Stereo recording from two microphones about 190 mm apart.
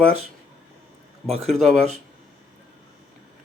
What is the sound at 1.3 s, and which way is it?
Speech, 35° right (ahead or behind).